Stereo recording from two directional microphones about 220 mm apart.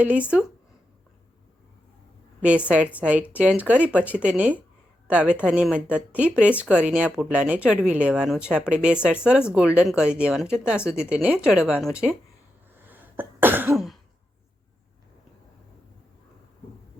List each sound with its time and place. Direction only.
0.0 s speech: 5° right (ahead or behind)
2.4 s speech: 5° right (ahead or behind)
12.9 s throat clearing: 10° right (ahead or behind)